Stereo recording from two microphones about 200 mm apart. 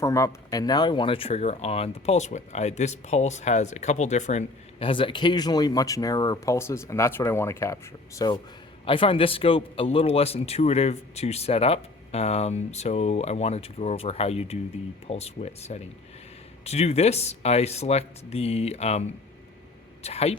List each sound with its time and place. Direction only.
0.0 s speech: 15° left (ahead or behind)
8.8 s speech: 25° left (ahead or behind)